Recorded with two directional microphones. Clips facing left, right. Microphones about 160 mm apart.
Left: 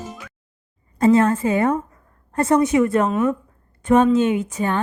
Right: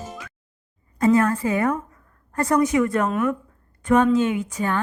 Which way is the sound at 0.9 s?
25° left (ahead or behind).